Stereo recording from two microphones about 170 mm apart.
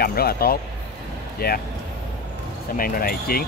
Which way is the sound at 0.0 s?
60° left (ahead or behind).